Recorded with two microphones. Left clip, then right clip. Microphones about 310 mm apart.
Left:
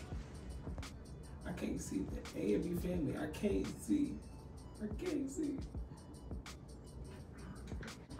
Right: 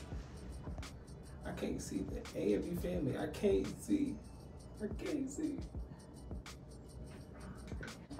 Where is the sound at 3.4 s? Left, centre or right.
Centre.